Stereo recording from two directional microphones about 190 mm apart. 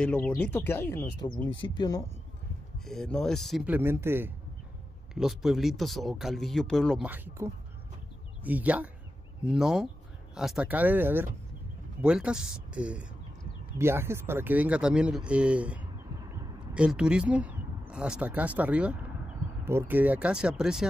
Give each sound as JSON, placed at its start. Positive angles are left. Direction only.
{"t": 0.0, "sound": "speech", "side_deg": 10}
{"t": 2.8, "sound": "speech", "side_deg": 0}
{"t": 5.1, "sound": "speech", "side_deg": 0}
{"t": 7.1, "sound": "speech", "side_deg": -15}